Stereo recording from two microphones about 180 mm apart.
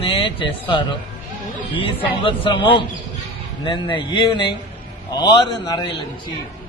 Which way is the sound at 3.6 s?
25° left (ahead or behind).